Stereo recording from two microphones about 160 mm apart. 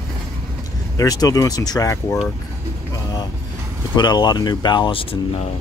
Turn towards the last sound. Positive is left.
turn(degrees=30)  # may be behind; listen again after turning